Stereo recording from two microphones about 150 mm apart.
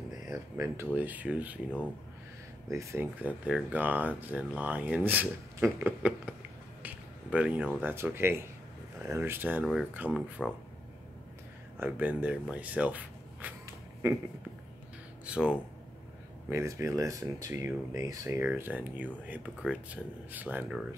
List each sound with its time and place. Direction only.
0.9 s speech: 10° right (ahead or behind)
2.7 s speech: 20° right (ahead or behind)
11.8 s speech: 10° right (ahead or behind)
15.2 s speech: 10° right (ahead or behind)